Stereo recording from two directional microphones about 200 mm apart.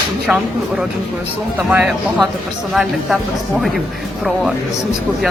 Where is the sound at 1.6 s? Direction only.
5° right (ahead or behind).